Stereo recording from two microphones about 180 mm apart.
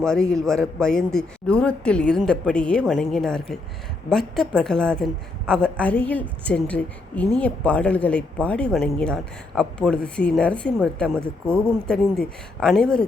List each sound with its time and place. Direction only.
0.0 s a woman's voice: 5° left (ahead or behind)